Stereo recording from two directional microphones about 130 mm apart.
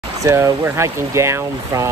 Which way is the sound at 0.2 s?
20° right (ahead or behind).